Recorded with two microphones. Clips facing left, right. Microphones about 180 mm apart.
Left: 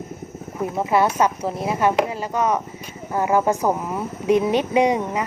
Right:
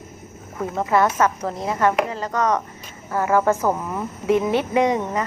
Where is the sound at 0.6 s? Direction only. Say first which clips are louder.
Even; 15° left (ahead or behind).